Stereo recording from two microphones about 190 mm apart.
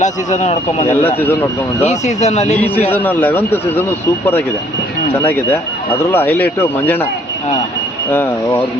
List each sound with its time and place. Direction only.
0.0 s a man's voice: 40° left (ahead or behind)
1.2 s speech: 10° left (ahead or behind)
1.8 s a man's voice: 35° left (ahead or behind)
2.6 s speech: 10° left (ahead or behind)
5.1 s speech: 10° left (ahead or behind)
8.1 s speech: 10° left (ahead or behind)